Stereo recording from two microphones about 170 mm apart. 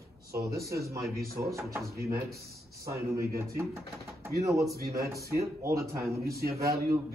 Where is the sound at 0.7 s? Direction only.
20° right (ahead or behind).